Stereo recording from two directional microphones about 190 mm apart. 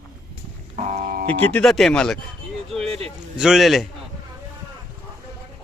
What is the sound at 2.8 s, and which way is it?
Speech, 30° right (ahead or behind).